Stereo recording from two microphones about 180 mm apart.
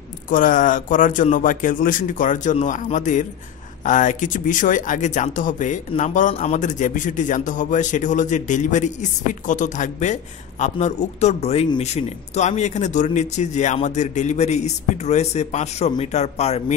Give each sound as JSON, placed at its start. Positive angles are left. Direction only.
{"t": 0.3, "sound": "a man's voice", "side_deg": 50}